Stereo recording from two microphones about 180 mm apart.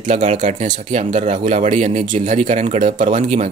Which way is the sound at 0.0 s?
40° right (ahead or behind).